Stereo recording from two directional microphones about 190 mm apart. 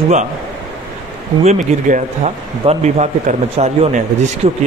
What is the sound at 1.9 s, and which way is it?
Speech, 40° right (ahead or behind).